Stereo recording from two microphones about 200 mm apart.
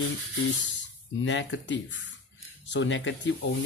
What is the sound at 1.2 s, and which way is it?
Speech, 70° left (ahead or behind).